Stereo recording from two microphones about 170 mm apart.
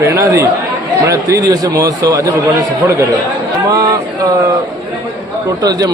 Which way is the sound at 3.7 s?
20° right (ahead or behind).